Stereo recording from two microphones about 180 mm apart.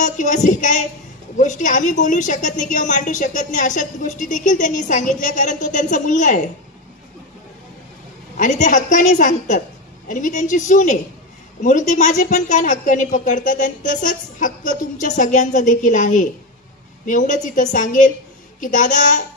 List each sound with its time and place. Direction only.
0.0 s a woman's voice: 45° left (ahead or behind)
8.4 s a woman's voice: 40° left (ahead or behind)